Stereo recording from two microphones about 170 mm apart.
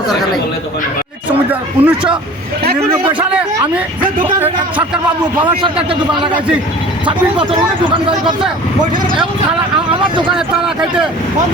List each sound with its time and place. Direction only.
1.5 s speech: 10° right (ahead or behind)
5.2 s a man's voice: 30° right (ahead or behind)
7.0 s a man's voice: 30° right (ahead or behind)
10.3 s speech: 5° right (ahead or behind)